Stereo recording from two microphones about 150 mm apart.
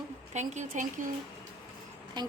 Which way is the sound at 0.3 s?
50° right (ahead or behind).